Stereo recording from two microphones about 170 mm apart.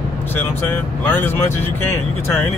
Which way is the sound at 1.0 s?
10° left (ahead or behind).